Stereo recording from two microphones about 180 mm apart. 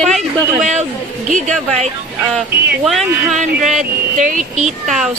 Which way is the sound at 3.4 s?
45° right (ahead or behind).